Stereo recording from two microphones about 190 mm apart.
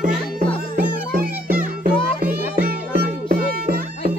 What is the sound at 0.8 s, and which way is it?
Music, 50° right (ahead or behind).